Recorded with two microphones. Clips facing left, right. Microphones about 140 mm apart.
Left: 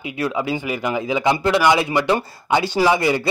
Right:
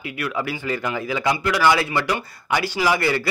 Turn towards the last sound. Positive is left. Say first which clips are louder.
# left 4 dB
turn(degrees=20)  # may be behind; listen again after turning